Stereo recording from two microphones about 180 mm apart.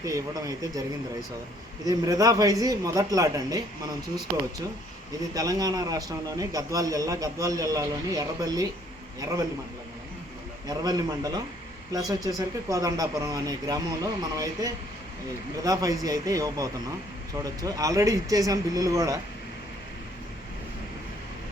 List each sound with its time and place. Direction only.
0.0 s a man's voice: 20° right (ahead or behind)
5.3 s a man's voice: 20° right (ahead or behind)
10.7 s a man's voice: 20° right (ahead or behind)